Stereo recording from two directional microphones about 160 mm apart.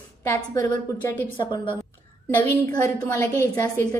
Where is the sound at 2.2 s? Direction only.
10° left (ahead or behind).